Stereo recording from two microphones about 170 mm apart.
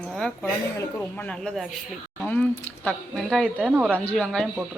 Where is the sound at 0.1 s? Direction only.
Centre (ahead or behind).